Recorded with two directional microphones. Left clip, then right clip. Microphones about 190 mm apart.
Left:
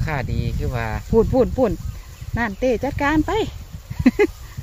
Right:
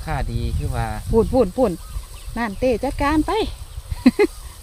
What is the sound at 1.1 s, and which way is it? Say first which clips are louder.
Speech: even; centre (ahead or behind).